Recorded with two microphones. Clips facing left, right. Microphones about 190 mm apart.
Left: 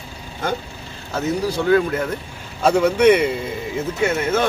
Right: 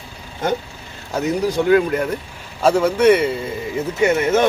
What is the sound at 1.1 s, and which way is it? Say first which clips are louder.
Speech: right 2 dB; 15° right (ahead or behind).